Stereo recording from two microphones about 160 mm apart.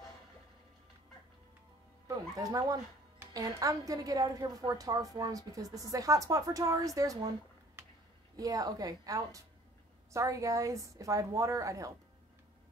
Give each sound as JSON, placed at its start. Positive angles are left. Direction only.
{"t": 2.0, "sound": "a woman's voice", "side_deg": -20}
{"t": 8.4, "sound": "a woman's voice", "side_deg": -25}